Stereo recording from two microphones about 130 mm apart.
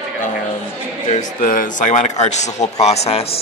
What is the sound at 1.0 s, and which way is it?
Speech, 75° left (ahead or behind).